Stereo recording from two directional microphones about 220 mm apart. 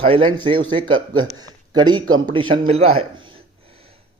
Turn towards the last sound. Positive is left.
turn(degrees=-25)  # may be behind; listen again after turning